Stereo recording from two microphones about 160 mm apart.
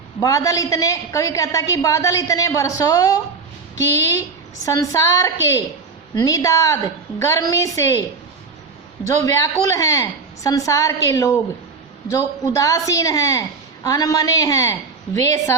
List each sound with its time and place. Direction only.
0.2 s a woman's voice: 20° left (ahead or behind)
4.6 s a woman's voice: 20° left (ahead or behind)
9.0 s a woman's voice: 20° left (ahead or behind)